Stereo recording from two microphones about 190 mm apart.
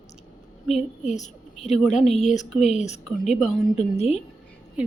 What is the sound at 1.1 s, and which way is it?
A woman's voice, 35° left (ahead or behind).